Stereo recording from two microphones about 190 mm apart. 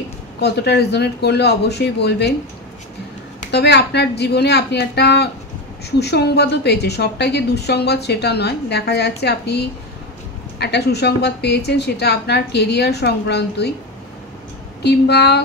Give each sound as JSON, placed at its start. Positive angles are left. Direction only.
{"t": 0.4, "sound": "a woman's voice", "side_deg": 60}
{"t": 3.5, "sound": "a woman's voice", "side_deg": 60}
{"t": 14.8, "sound": "a woman's voice", "side_deg": 60}